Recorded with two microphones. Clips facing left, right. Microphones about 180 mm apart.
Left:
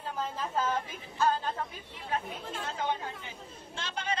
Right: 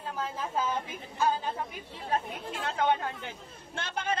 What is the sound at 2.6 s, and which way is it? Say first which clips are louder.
Speech: right 6 dB; 70° right (ahead or behind).